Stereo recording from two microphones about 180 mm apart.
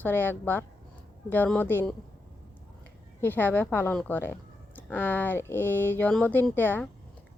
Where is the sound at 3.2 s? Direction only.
10° left (ahead or behind).